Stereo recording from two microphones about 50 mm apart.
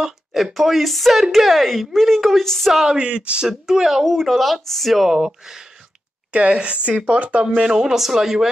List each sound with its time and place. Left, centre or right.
0.0 s a woman's voice: centre
2.7 s speech: centre
3.0 s a woman's voice: right
3.4 s speech: centre
4.0 s a woman's voice: centre
5.1 s speech: centre
6.3 s a woman's voice: right
7.4 s speech: centre